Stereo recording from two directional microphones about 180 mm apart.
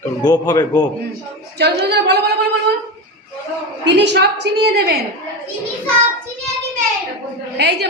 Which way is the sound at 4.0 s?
70° right (ahead or behind).